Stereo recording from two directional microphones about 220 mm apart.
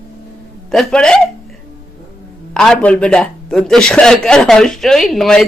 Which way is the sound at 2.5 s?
5° left (ahead or behind).